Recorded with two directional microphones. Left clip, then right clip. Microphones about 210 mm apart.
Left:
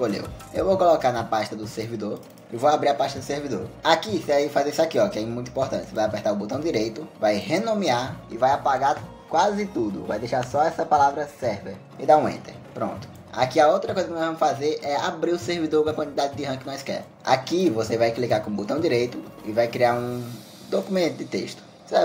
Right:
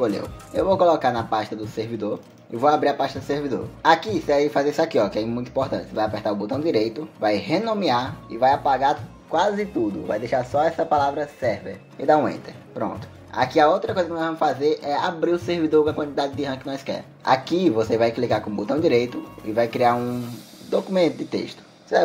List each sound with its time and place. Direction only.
0.6 s speech: 25° right (ahead or behind)
10.0 s speech: 10° right (ahead or behind)
12.1 s speech: 25° right (ahead or behind)